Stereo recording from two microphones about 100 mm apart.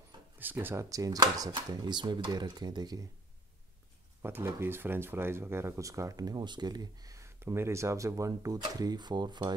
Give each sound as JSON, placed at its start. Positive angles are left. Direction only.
{"t": 0.4, "sound": "speech", "side_deg": -20}
{"t": 0.8, "sound": "speech", "side_deg": -35}
{"t": 4.2, "sound": "speech", "side_deg": -20}